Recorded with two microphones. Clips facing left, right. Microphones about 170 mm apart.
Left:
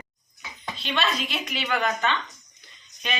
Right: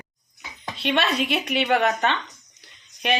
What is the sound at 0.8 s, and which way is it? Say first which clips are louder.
Speech: right 5 dB; 65° right (ahead or behind).